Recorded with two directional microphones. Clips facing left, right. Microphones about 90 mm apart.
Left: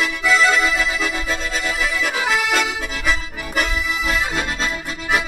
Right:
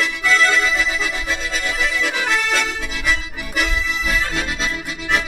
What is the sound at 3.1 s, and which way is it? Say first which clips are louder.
Accordion: right 1 dB; 40° left (ahead or behind).